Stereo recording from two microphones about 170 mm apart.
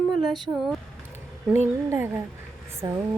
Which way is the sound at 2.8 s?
25° right (ahead or behind).